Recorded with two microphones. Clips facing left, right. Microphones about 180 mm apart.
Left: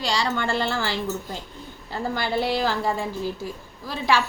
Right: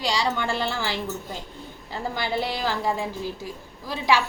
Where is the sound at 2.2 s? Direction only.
15° right (ahead or behind).